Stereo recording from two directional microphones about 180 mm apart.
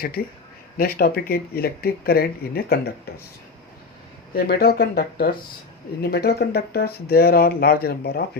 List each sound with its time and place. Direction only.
0.0 s speech: 55° left (ahead or behind)
4.4 s speech: 60° left (ahead or behind)